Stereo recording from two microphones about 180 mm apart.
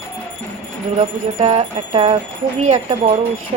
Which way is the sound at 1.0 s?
35° right (ahead or behind).